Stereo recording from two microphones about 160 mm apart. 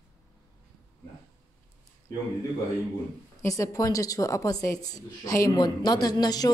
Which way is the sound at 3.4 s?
20° left (ahead or behind).